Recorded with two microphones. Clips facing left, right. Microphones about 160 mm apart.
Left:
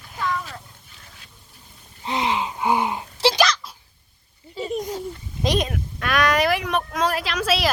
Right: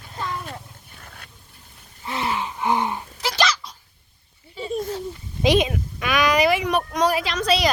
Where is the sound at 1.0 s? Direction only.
60° right (ahead or behind).